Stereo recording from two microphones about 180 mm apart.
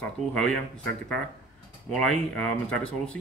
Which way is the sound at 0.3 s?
5° left (ahead or behind).